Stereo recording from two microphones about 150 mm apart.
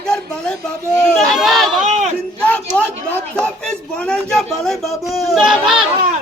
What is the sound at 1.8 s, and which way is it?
Crowd, 55° right (ahead or behind).